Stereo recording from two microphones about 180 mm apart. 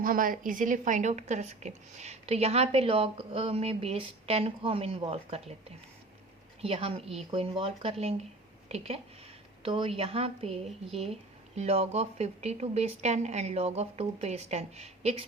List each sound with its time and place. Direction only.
0.0 s a woman's voice: 50° right (ahead or behind)
6.6 s a woman's voice: 30° right (ahead or behind)